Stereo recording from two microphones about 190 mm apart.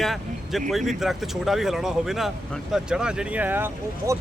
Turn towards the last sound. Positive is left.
turn(degrees=-10)  # may be behind; listen again after turning